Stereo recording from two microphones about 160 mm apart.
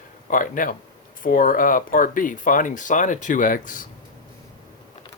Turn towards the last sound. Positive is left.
turn(degrees=55)  # may be behind; listen again after turning